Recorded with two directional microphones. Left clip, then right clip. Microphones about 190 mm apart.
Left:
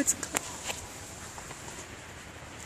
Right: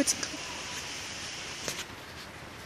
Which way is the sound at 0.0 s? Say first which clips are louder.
Right 2 dB; 10° right (ahead or behind).